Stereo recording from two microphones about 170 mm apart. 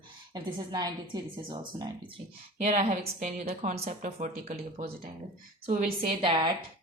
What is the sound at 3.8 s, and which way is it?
Speech, 50° right (ahead or behind).